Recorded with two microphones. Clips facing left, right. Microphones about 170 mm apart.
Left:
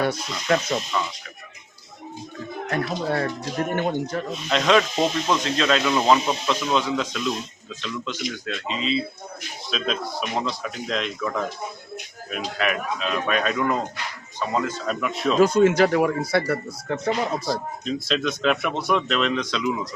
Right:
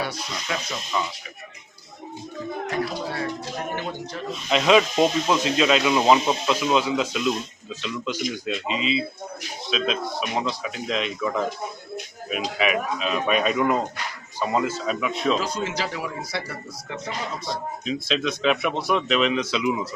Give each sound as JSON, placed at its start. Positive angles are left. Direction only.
{"t": 0.0, "sound": "speech", "side_deg": 50}
{"t": 2.6, "sound": "speech", "side_deg": 55}
{"t": 4.4, "sound": "speech", "side_deg": -5}
{"t": 15.4, "sound": "speech", "side_deg": 55}
{"t": 17.8, "sound": "speech", "side_deg": 0}